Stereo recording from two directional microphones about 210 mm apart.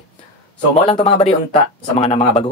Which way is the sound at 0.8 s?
30° left (ahead or behind).